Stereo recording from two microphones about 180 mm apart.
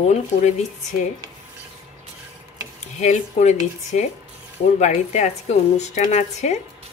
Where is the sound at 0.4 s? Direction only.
40° left (ahead or behind).